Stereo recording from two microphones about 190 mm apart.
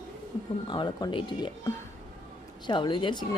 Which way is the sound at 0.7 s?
20° left (ahead or behind).